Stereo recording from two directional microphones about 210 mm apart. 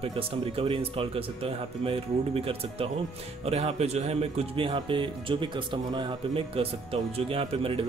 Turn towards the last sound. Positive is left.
turn(degrees=-25)  # may be behind; listen again after turning